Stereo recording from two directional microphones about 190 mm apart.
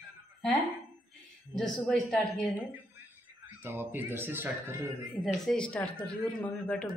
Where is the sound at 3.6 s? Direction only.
10° right (ahead or behind).